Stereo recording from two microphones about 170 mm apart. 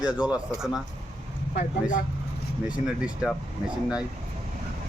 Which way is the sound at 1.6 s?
50° left (ahead or behind).